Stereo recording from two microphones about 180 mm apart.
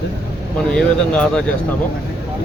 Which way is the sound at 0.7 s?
5° left (ahead or behind).